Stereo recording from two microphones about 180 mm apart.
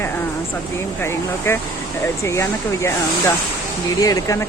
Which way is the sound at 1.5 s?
15° left (ahead or behind).